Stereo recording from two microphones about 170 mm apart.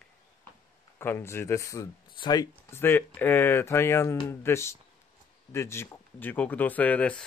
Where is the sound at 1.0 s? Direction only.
15° left (ahead or behind).